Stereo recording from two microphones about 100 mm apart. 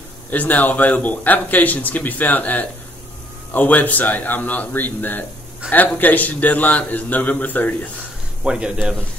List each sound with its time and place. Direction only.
0.3 s speech: 15° left (ahead or behind)
8.5 s a man's voice: 10° right (ahead or behind)